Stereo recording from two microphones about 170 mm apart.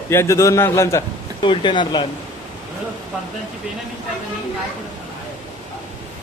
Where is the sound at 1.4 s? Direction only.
30° left (ahead or behind).